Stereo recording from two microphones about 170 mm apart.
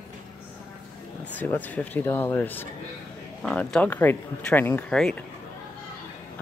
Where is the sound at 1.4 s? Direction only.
10° left (ahead or behind).